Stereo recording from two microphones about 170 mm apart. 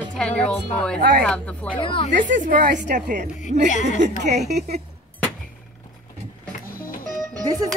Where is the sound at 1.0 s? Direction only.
60° right (ahead or behind).